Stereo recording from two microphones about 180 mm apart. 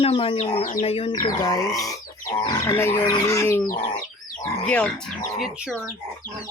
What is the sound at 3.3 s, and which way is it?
Bird, 15° left (ahead or behind).